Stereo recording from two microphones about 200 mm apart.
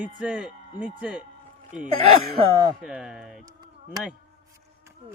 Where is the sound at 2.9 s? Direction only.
5° right (ahead or behind).